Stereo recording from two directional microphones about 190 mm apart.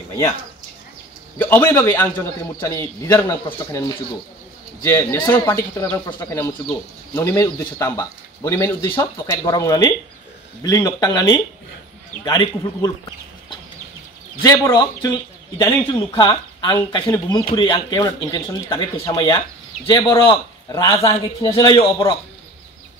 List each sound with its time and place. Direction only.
1.4 s a man's voice: 15° left (ahead or behind)
4.8 s a man's voice: 15° left (ahead or behind)
14.4 s speech: 20° left (ahead or behind)
21.0 s speech: 30° left (ahead or behind)